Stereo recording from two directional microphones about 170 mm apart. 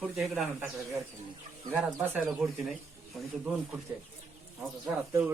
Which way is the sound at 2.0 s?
5° right (ahead or behind).